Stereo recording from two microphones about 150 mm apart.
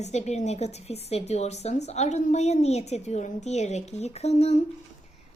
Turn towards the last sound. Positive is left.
turn(degrees=45)  # may be behind; listen again after turning